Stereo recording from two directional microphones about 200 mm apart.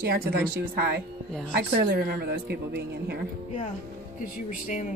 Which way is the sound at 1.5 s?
55° right (ahead or behind).